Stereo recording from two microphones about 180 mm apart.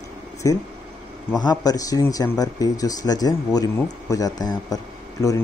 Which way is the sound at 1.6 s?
20° left (ahead or behind).